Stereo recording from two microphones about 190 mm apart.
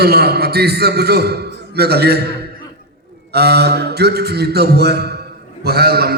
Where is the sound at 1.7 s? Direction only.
55° right (ahead or behind).